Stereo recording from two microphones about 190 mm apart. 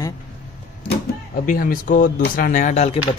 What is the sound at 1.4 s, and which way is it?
Speech, 45° left (ahead or behind).